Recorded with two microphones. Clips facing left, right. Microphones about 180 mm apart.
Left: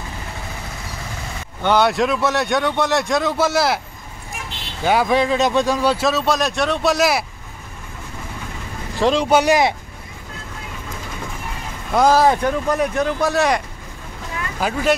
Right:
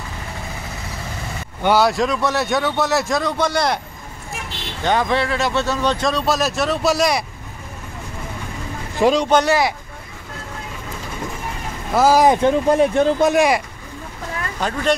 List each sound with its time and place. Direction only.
1.6 s speech: 5° right (ahead or behind)
4.8 s speech: 10° left (ahead or behind)
9.0 s speech: centre (ahead or behind)
11.9 s speech: 5° right (ahead or behind)
12.2 s speech: 20° right (ahead or behind)
14.6 s speech: 5° left (ahead or behind)